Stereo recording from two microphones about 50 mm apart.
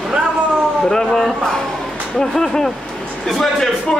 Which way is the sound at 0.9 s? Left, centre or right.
Centre.